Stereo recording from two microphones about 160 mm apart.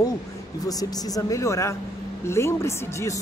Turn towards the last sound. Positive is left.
turn(degrees=20)  # may be behind; listen again after turning